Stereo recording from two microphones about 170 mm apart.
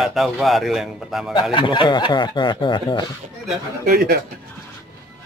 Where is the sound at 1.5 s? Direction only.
30° left (ahead or behind).